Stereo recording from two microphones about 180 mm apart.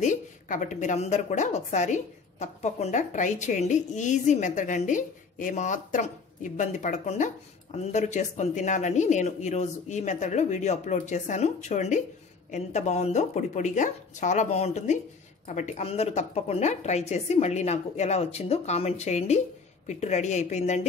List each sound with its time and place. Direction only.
0.0 s a woman's voice: 45° left (ahead or behind)